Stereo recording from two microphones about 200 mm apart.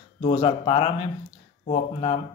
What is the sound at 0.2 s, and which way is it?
Speech, 25° left (ahead or behind).